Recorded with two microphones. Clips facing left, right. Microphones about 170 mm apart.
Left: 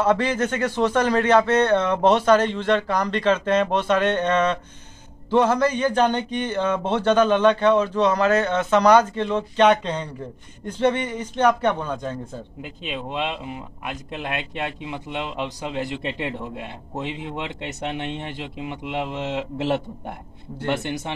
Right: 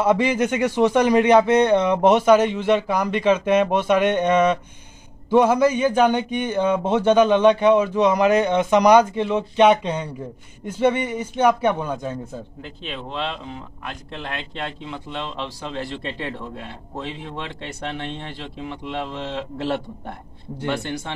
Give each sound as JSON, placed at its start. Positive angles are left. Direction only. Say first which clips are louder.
{"t": 0.0, "sound": "speech", "louder": "right 2 dB", "side_deg": -10}
{"t": 12.6, "sound": "speech", "louder": "left 2 dB", "side_deg": 15}